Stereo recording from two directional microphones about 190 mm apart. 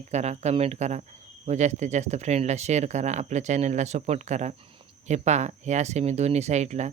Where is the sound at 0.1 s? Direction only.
35° right (ahead or behind).